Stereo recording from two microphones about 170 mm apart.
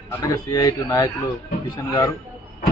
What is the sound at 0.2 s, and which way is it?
Speech, 20° left (ahead or behind).